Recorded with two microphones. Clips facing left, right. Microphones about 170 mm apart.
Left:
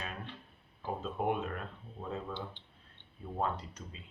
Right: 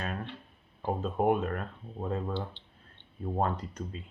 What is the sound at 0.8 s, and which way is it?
Speech, 50° right (ahead or behind).